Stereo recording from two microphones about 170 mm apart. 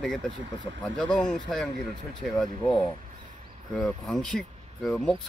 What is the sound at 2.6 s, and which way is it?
Speech, 30° left (ahead or behind).